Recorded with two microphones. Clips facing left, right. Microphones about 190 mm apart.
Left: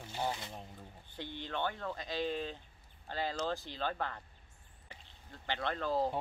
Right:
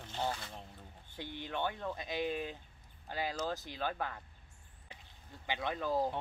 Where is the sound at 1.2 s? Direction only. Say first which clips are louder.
Even; 15° right (ahead or behind).